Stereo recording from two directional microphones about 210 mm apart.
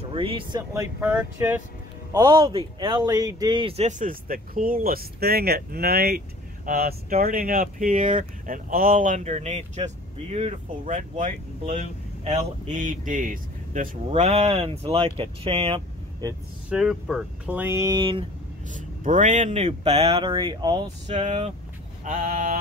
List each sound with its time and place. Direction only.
0.0 s speech: 25° right (ahead or behind)
1.0 s speech: 5° right (ahead or behind)
16.6 s speech: centre (ahead or behind); by 18.2 s 20° right (ahead or behind)
18.7 s speech: 35° right (ahead or behind)
22.0 s speech: 40° right (ahead or behind)